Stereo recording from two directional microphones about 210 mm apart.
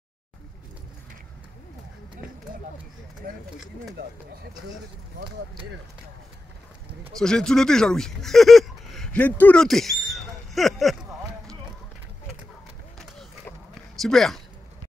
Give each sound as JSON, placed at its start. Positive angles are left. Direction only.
{"t": 3.2, "sound": "speech", "side_deg": -45}
{"t": 7.2, "sound": "speech", "side_deg": 5}
{"t": 13.9, "sound": "speech", "side_deg": 0}